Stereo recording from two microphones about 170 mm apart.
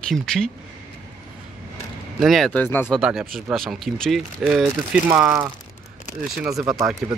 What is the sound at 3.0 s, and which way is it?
Speech, 5° right (ahead or behind).